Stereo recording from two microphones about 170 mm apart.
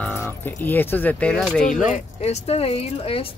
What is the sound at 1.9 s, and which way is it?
Speech, 40° left (ahead or behind).